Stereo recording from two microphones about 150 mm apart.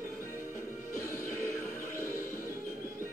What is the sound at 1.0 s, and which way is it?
Music, 15° left (ahead or behind).